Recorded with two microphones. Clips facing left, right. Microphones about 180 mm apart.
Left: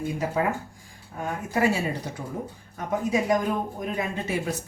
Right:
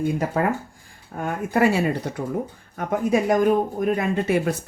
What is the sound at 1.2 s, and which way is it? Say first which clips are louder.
Speech: right 4 dB; 60° right (ahead or behind).